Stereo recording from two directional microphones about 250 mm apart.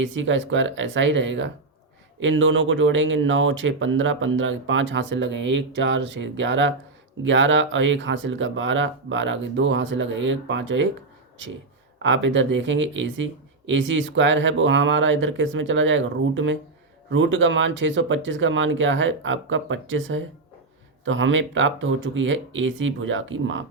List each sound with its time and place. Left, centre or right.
0.0 s speech: right